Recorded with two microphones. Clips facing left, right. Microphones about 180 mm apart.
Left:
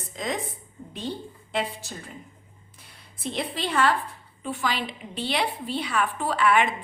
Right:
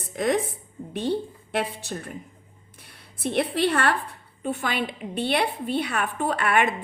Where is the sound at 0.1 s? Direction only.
65° right (ahead or behind).